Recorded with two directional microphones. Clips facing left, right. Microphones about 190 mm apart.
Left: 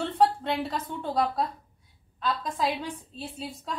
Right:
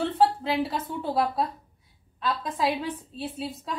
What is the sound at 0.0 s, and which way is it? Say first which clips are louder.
A woman's voice: right 1 dB; 5° right (ahead or behind).